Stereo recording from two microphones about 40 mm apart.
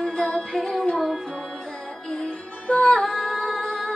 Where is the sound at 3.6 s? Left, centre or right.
Centre.